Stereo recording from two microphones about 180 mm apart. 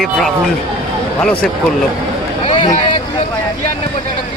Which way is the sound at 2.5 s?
25° left (ahead or behind).